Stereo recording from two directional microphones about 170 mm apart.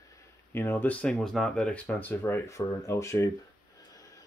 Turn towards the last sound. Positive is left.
turn(degrees=20)  # may be behind; listen again after turning